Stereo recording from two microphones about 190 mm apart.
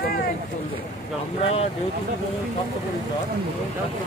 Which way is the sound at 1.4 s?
30° left (ahead or behind).